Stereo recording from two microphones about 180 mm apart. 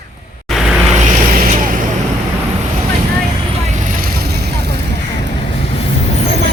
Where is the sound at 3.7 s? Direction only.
45° right (ahead or behind); by 4.7 s 65° right (ahead or behind).